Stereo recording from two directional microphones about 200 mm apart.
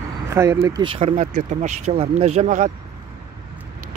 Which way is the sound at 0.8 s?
30° right (ahead or behind).